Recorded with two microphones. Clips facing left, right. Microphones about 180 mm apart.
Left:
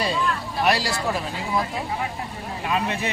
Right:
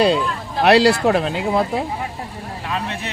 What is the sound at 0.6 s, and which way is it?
Speech, 70° right (ahead or behind).